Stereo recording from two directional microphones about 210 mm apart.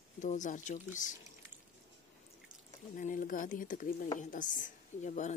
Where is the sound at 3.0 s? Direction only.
40° left (ahead or behind).